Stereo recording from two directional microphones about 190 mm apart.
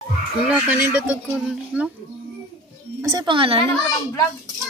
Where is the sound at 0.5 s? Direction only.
10° right (ahead or behind).